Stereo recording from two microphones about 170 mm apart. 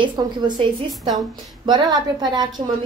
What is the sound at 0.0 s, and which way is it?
Speech, 30° right (ahead or behind).